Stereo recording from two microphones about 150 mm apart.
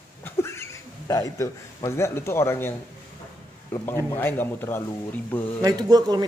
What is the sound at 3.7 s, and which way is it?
Speech, 15° left (ahead or behind).